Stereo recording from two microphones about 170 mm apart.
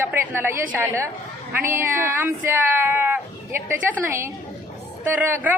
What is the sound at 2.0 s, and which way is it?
Speech, 10° right (ahead or behind).